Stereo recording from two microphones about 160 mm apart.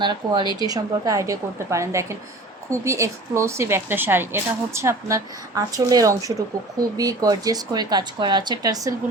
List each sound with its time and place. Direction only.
0.0 s a woman's voice: 30° right (ahead or behind)